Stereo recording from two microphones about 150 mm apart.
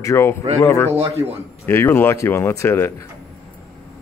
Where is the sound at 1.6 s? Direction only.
15° left (ahead or behind).